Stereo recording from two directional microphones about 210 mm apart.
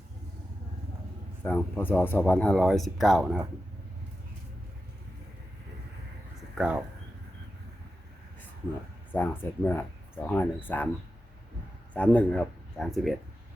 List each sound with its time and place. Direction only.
1.5 s speech: 5° left (ahead or behind)
6.6 s speech: 5° right (ahead or behind)
9.1 s speech: 10° left (ahead or behind)
11.9 s a man's voice: 5° left (ahead or behind)